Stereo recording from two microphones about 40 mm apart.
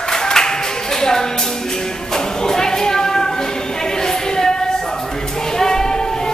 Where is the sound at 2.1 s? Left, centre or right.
Centre.